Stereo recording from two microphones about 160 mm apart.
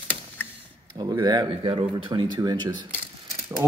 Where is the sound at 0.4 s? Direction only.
10° left (ahead or behind).